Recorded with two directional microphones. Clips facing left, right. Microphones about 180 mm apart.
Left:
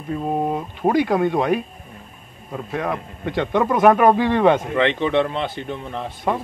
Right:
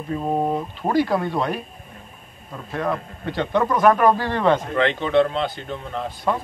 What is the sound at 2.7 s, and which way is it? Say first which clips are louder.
Speech: right 1 dB; 15° left (ahead or behind).